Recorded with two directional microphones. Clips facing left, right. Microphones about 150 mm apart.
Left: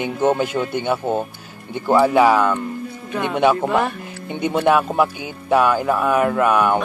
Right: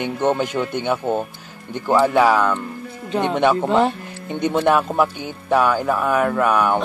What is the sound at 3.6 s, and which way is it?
Speech, 25° right (ahead or behind).